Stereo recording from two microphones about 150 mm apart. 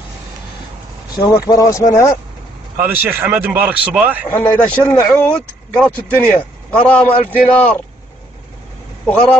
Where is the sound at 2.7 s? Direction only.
15° right (ahead or behind).